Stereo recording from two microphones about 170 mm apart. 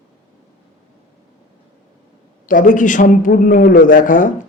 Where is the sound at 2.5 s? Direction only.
50° left (ahead or behind).